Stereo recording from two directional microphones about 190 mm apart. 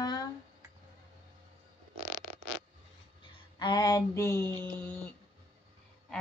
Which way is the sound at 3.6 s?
20° left (ahead or behind).